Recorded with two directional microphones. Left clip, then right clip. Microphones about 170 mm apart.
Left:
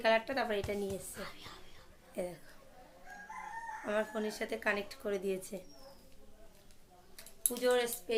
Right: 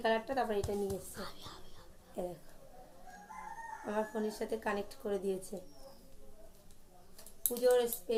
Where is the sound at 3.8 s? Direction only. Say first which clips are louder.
Left 1 dB; 20° left (ahead or behind).